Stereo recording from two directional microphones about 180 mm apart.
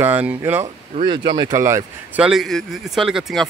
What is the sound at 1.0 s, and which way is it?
Speech, 25° right (ahead or behind).